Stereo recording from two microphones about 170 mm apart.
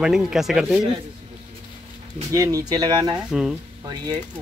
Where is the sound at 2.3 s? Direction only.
20° right (ahead or behind).